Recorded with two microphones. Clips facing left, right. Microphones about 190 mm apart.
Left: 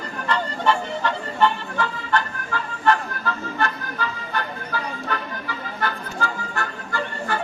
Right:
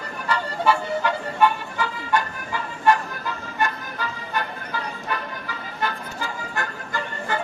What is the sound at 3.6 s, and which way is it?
Music, 15° right (ahead or behind).